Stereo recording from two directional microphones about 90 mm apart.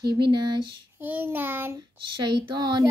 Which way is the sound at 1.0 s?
20° right (ahead or behind).